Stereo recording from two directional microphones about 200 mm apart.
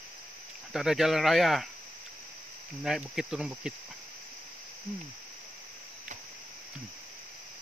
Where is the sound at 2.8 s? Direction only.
Centre (ahead or behind).